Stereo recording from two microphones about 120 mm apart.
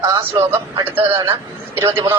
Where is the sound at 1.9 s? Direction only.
20° right (ahead or behind).